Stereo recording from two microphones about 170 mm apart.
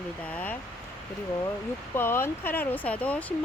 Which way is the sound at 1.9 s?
15° left (ahead or behind).